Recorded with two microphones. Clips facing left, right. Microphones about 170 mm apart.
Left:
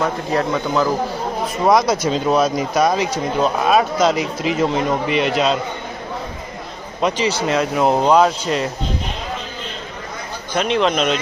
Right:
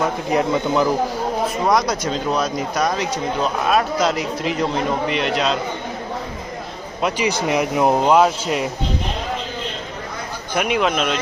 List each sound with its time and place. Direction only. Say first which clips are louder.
0.3 s speech: right 1 dB; 20° right (ahead or behind)
1.7 s a man's voice: left 3 dB; centre (ahead or behind)
7.0 s speech: left 2 dB; 10° right (ahead or behind)
10.5 s speech: left 2 dB; 10° right (ahead or behind)